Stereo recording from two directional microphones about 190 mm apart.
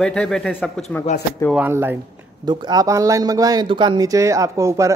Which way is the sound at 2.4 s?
25° right (ahead or behind).